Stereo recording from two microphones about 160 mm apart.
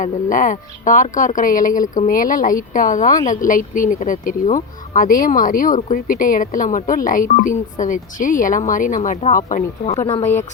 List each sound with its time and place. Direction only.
0.0 s speech: 55° left (ahead or behind)